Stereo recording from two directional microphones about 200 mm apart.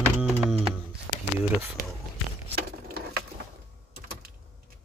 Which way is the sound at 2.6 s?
50° right (ahead or behind).